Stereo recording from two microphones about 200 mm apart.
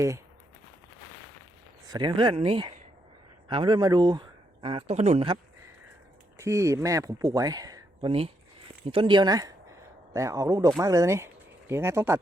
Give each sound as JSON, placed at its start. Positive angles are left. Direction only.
{"t": 1.9, "sound": "speech", "side_deg": -20}
{"t": 6.3, "sound": "speech", "side_deg": -15}